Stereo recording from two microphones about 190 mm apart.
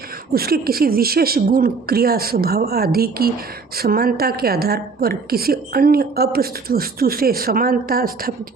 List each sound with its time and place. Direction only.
0.3 s a woman's voice: 55° right (ahead or behind)